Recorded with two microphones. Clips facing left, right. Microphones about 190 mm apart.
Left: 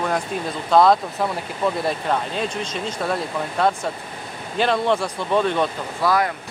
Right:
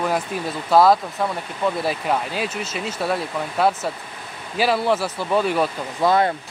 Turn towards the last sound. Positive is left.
turn(degrees=-25)  # may be behind; listen again after turning